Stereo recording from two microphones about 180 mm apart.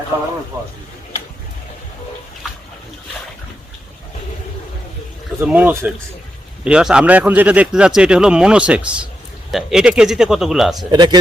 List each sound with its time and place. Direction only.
0.5 s speech: 20° right (ahead or behind)
5.4 s speech: 10° right (ahead or behind)
10.9 s speech: 25° right (ahead or behind)